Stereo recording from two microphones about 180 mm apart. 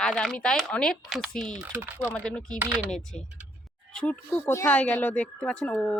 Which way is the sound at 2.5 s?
10° right (ahead or behind).